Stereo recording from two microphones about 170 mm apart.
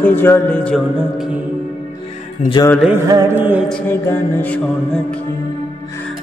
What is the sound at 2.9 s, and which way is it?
Music, 20° right (ahead or behind).